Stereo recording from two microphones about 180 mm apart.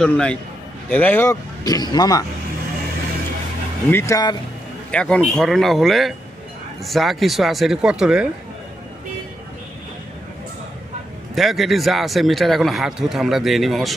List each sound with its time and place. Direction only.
0.0 s speech: 5° left (ahead or behind); by 2.2 s 20° left (ahead or behind)
3.9 s speech: 15° left (ahead or behind)
4.9 s speech: 5° left (ahead or behind)
11.3 s speech: centre (ahead or behind)